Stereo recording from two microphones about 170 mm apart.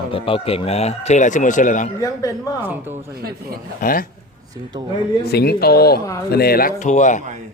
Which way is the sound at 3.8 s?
55° left (ahead or behind).